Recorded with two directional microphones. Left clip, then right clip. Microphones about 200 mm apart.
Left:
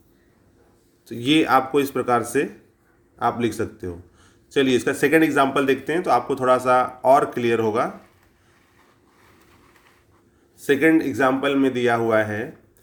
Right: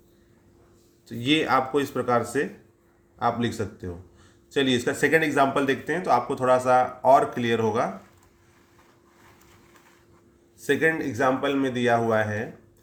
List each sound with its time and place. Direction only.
1.0 s speech: 25° left (ahead or behind)
10.6 s speech: 25° left (ahead or behind)